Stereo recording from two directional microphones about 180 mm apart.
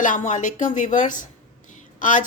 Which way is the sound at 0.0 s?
45° left (ahead or behind).